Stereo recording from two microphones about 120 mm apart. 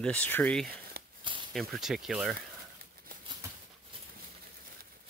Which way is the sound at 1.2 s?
45° right (ahead or behind).